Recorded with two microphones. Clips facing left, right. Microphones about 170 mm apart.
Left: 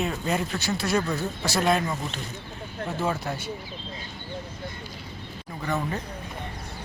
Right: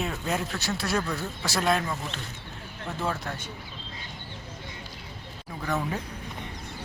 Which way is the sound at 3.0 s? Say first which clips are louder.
Left 3 dB; 10° left (ahead or behind).